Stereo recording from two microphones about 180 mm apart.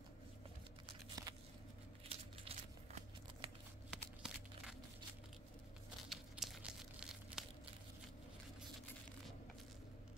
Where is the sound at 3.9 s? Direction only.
5° right (ahead or behind).